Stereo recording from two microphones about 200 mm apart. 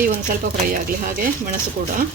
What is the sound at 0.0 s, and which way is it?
Speech, 45° right (ahead or behind).